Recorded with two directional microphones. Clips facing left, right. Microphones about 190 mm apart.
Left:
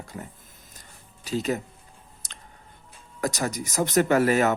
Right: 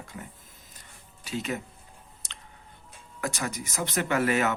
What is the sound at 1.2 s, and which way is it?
Speech, 40° left (ahead or behind).